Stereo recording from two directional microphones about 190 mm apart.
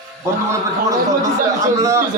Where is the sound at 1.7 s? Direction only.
15° right (ahead or behind).